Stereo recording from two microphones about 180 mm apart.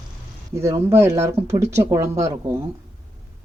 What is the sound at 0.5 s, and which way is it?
Speech, 15° right (ahead or behind).